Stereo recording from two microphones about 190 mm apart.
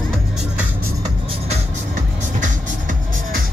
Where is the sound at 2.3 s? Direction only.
45° right (ahead or behind).